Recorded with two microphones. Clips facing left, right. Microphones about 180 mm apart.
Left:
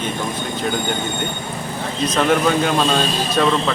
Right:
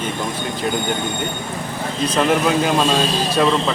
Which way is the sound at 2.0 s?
5° right (ahead or behind).